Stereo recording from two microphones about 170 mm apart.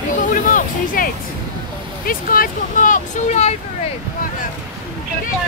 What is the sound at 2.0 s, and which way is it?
Speech, 55° left (ahead or behind).